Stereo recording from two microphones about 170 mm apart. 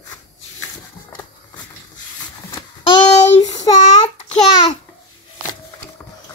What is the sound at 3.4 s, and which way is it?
Child singing, 20° left (ahead or behind).